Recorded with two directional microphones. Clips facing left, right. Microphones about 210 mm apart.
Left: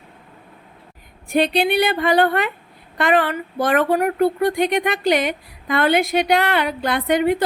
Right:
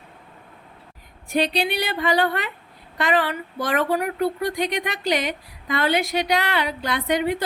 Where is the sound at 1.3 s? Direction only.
55° left (ahead or behind).